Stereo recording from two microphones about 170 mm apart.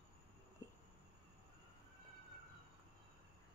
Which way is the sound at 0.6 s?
20° left (ahead or behind).